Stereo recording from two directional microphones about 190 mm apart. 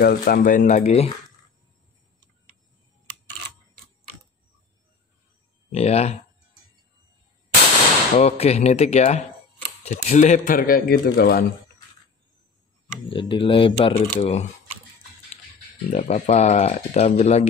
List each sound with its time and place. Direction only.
0.0 s speech: 50° left (ahead or behind); by 1.1 s 35° left (ahead or behind)
5.7 s speech: 35° left (ahead or behind)
8.2 s a man's voice: 35° left (ahead or behind); by 11.4 s 55° left (ahead or behind)
13.1 s speech: 25° left (ahead or behind)
15.9 s speech: 40° left (ahead or behind)